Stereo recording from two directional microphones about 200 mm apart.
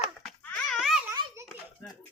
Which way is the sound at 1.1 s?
15° right (ahead or behind).